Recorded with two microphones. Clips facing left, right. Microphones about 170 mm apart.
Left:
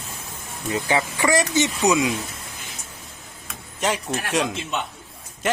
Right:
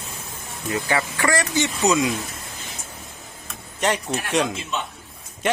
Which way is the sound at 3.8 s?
Centre (ahead or behind).